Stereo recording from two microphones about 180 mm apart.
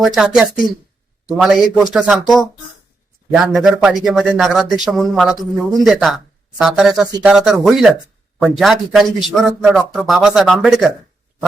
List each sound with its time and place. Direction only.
0.0 s a man's voice: centre (ahead or behind)